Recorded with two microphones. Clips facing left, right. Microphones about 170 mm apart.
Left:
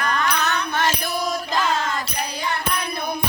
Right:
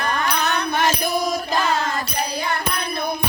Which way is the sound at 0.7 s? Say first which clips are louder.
Right 4 dB; 15° right (ahead or behind).